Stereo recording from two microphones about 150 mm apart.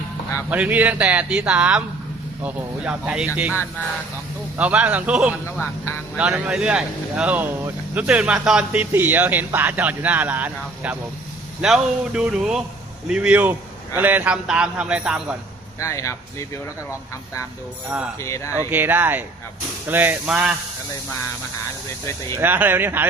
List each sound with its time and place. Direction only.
0.5 s speech: 10° right (ahead or behind)
4.5 s speech: 10° right (ahead or behind)
5.5 s speech: 15° left (ahead or behind)
6.1 s speech: 10° right (ahead or behind)
15.8 s speech: 20° left (ahead or behind)
17.8 s speech: 5° right (ahead or behind)
18.2 s speech: 20° left (ahead or behind)
18.7 s speech: 10° right (ahead or behind)
22.4 s speech: 10° right (ahead or behind)